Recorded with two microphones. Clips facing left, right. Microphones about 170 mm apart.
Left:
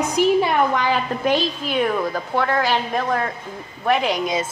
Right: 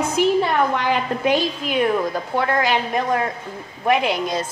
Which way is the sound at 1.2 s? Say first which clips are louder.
Right 1 dB; 5° right (ahead or behind).